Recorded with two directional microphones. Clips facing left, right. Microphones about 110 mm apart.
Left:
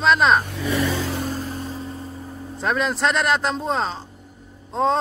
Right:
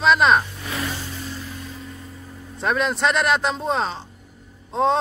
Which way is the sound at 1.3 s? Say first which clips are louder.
Left 6 dB; 40° left (ahead or behind).